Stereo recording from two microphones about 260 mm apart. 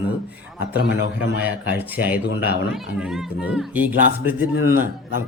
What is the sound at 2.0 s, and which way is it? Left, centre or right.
Speech, centre.